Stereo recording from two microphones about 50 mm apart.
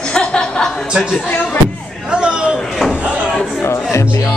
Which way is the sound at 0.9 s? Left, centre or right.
Centre.